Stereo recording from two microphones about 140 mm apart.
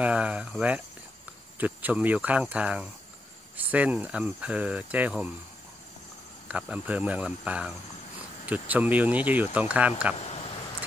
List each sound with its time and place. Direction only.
0.0 s speech: 10° right (ahead or behind)
6.5 s speech: 10° right (ahead or behind)
10.1 s a sound: 45° left (ahead or behind)